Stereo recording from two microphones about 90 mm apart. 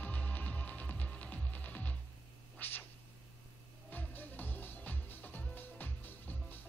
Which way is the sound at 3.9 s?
20° left (ahead or behind).